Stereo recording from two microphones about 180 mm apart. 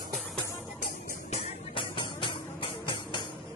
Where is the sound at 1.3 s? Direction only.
30° left (ahead or behind).